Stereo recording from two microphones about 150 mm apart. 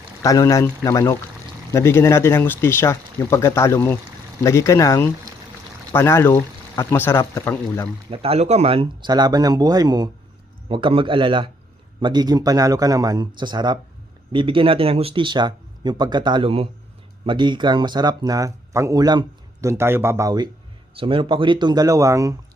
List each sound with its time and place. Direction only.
0.2 s speech: 20° left (ahead or behind)
8.1 s speech: 40° right (ahead or behind); by 20.5 s 25° right (ahead or behind)
20.9 s speech: 35° right (ahead or behind)